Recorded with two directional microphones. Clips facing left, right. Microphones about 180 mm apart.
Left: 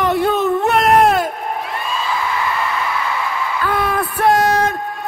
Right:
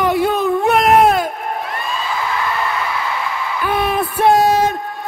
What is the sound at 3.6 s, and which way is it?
Music, 20° right (ahead or behind).